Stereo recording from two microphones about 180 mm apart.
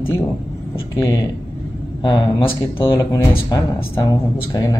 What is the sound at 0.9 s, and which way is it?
Speech, 20° left (ahead or behind).